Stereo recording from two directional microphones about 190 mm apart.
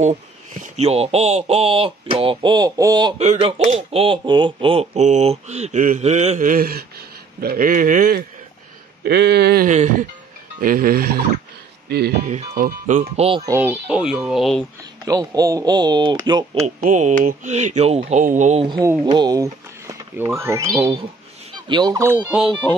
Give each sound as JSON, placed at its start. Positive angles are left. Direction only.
{"t": 0.0, "sound": "speech", "side_deg": -35}
{"t": 3.2, "sound": "speech", "side_deg": -35}
{"t": 9.0, "sound": "speech", "side_deg": -60}
{"t": 9.7, "sound": "speech", "side_deg": -40}
{"t": 10.6, "sound": "speech", "side_deg": -50}
{"t": 12.3, "sound": "speech", "side_deg": -40}
{"t": 13.5, "sound": "speech", "side_deg": -10}
{"t": 15.0, "sound": "speech", "side_deg": -20}
{"t": 16.6, "sound": "speech", "side_deg": -40}
{"t": 18.7, "sound": "turkey", "side_deg": -15}
{"t": 19.0, "sound": "speech", "side_deg": -20}
{"t": 21.5, "sound": "turkey", "side_deg": -25}